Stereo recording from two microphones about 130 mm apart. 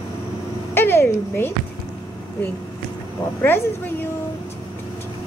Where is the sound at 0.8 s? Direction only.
15° left (ahead or behind).